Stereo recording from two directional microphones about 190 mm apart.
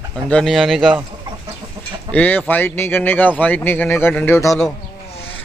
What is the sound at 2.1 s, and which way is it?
A man's voice, 10° left (ahead or behind).